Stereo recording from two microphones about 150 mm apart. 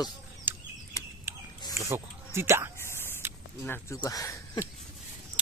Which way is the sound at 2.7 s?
15° left (ahead or behind).